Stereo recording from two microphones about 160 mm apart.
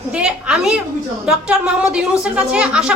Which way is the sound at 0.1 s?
5° right (ahead or behind).